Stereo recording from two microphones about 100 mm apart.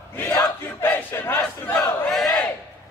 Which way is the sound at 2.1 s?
Centre (ahead or behind).